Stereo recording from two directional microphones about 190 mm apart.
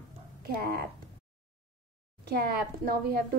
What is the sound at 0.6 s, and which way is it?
Speech, 50° right (ahead or behind).